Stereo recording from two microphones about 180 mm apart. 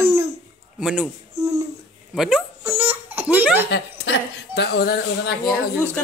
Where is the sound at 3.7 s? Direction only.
75° left (ahead or behind).